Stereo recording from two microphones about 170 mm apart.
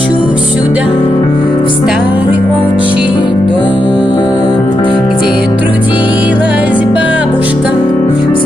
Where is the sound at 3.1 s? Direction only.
30° left (ahead or behind).